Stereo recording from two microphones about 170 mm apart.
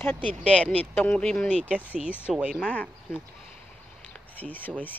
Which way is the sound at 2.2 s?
5° right (ahead or behind).